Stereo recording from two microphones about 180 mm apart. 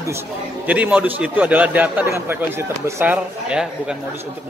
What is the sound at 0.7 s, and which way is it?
A man's voice, 5° right (ahead or behind).